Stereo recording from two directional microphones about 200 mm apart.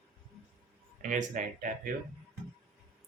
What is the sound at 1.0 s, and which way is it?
Speech, 40° right (ahead or behind).